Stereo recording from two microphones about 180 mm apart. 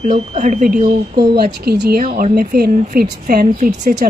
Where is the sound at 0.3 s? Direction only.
45° right (ahead or behind); by 2.0 s 65° right (ahead or behind).